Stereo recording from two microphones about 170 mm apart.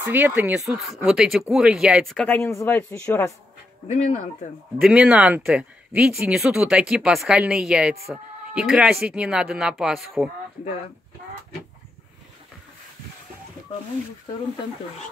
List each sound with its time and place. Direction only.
0.0 s speech: 10° right (ahead or behind)
0.7 s speech: centre (ahead or behind)
3.8 s speech: 40° left (ahead or behind)
4.7 s speech: 5° right (ahead or behind)